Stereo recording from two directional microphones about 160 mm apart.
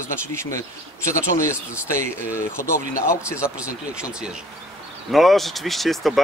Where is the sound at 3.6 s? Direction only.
5° right (ahead or behind).